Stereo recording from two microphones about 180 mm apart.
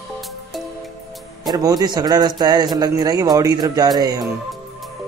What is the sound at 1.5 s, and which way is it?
A man's voice, 20° right (ahead or behind).